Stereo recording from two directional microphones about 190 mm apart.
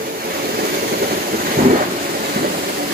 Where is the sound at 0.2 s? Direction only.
50° right (ahead or behind).